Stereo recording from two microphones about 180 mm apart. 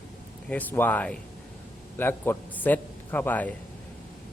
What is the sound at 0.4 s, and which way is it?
Speech, 10° left (ahead or behind).